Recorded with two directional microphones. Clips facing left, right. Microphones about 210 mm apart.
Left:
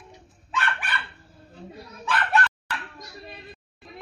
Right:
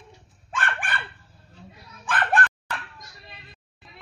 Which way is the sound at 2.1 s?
50° right (ahead or behind).